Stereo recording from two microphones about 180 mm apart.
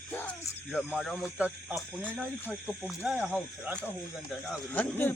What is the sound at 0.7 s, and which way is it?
Speech, centre (ahead or behind).